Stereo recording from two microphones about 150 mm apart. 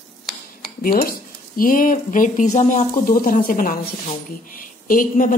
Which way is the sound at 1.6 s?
65° left (ahead or behind).